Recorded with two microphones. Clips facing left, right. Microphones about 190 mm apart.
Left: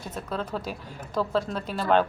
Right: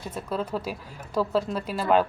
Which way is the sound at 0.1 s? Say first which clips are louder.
Right 2 dB; 5° right (ahead or behind).